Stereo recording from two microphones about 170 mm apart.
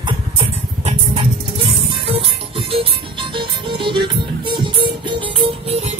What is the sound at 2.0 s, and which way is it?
Music, 35° right (ahead or behind).